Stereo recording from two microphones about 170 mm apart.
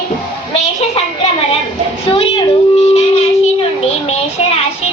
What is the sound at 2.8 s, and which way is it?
A woman's voice, 40° left (ahead or behind).